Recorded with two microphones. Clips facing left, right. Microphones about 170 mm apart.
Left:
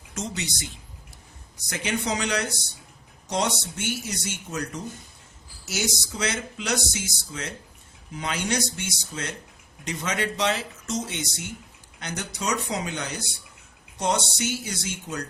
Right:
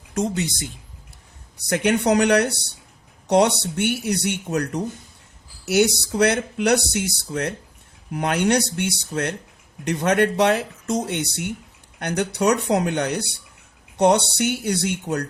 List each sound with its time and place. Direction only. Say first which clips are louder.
0.1 s speech: right 9 dB; 55° right (ahead or behind)
1.5 s speech: right 9 dB; 65° right (ahead or behind)